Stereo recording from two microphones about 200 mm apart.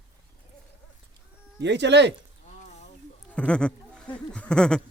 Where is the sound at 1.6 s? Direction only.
60° right (ahead or behind).